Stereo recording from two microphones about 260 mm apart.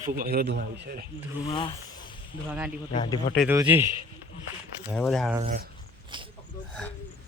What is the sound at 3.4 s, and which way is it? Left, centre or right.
A man's voice, centre.